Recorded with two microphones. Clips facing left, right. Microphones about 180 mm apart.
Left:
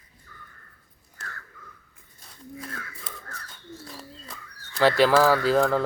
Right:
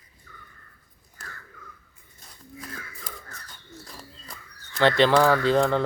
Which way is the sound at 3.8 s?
Centre (ahead or behind).